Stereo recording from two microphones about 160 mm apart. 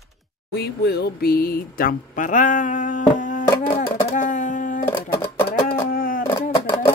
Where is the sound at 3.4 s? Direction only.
25° left (ahead or behind).